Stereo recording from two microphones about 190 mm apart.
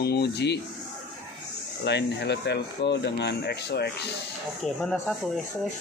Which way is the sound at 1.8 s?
60° left (ahead or behind).